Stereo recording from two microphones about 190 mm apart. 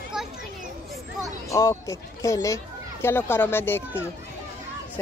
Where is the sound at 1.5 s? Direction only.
15° left (ahead or behind).